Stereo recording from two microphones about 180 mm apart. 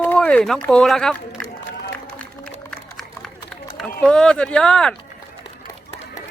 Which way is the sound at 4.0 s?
5° left (ahead or behind).